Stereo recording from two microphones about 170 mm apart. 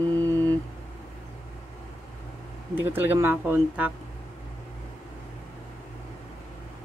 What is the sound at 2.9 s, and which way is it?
Speech, 10° right (ahead or behind).